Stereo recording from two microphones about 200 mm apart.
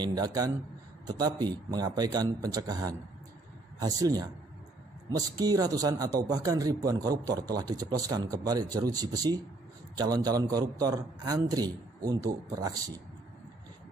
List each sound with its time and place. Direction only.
0.0 s a man's voice: 20° right (ahead or behind)
5.4 s a man's voice: 20° right (ahead or behind)